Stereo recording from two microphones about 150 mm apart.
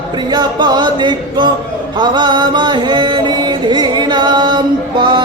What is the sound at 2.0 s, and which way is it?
Chant, 30° right (ahead or behind).